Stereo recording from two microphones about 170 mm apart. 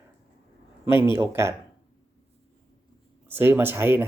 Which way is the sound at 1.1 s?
15° right (ahead or behind).